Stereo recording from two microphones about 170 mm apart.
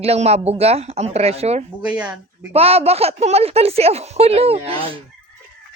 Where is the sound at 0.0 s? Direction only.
35° right (ahead or behind).